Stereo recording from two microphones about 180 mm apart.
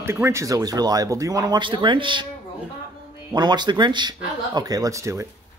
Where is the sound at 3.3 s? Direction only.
25° right (ahead or behind).